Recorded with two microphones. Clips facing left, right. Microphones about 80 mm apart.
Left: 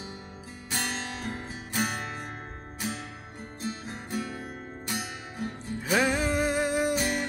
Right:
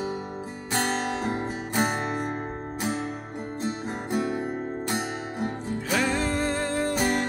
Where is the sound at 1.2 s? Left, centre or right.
Centre.